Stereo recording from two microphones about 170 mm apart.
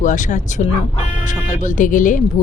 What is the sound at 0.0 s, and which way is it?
Speech, 45° left (ahead or behind).